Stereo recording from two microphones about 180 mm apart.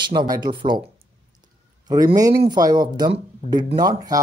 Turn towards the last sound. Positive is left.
turn(degrees=-20)  # may be behind; listen again after turning